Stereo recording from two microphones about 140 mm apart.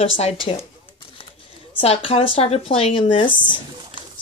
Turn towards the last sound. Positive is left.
turn(degrees=35)  # may be behind; listen again after turning